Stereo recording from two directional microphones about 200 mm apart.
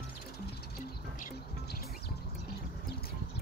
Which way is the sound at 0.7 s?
45° left (ahead or behind).